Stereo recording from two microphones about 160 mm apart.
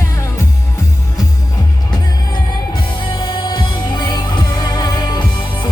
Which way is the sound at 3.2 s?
30° left (ahead or behind).